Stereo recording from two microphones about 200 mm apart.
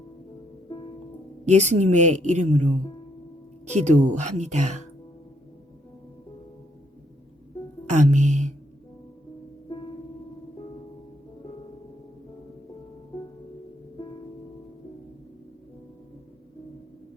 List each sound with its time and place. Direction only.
1.5 s a woman's voice: 35° right (ahead or behind)
7.9 s music: 35° right (ahead or behind)